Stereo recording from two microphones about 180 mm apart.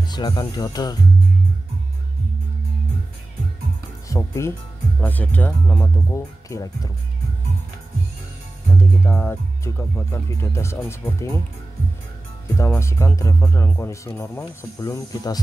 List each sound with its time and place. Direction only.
0.1 s speech: 25° left (ahead or behind)
4.1 s speech: 15° left (ahead or behind)
8.7 s speech: 15° left (ahead or behind)
12.5 s speech: 15° left (ahead or behind)